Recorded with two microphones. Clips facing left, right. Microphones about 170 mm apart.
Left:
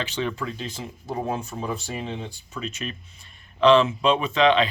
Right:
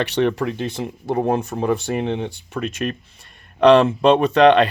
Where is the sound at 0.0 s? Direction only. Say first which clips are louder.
Right 9 dB; 65° right (ahead or behind).